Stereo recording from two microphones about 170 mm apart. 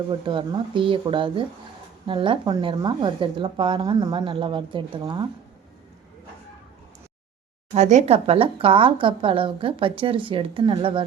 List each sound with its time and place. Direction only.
0.1 s speech: 30° right (ahead or behind)
7.7 s speech: 40° right (ahead or behind)